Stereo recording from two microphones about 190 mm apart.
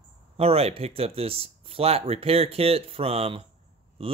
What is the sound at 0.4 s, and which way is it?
Speech, 30° right (ahead or behind).